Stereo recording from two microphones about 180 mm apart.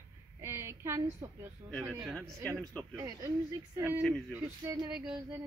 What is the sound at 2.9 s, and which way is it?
A woman's voice, 20° right (ahead or behind).